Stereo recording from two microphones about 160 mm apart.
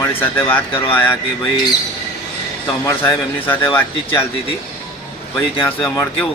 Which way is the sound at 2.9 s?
15° left (ahead or behind).